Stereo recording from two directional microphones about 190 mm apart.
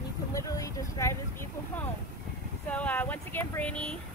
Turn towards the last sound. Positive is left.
turn(degrees=5)  # may be behind; listen again after turning